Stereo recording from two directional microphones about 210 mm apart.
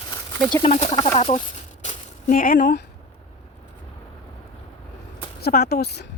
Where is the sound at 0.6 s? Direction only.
30° left (ahead or behind).